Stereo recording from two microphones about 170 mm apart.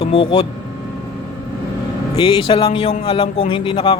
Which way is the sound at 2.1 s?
30° left (ahead or behind).